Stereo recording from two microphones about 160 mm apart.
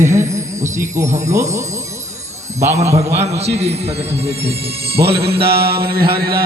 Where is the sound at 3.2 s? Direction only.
40° right (ahead or behind).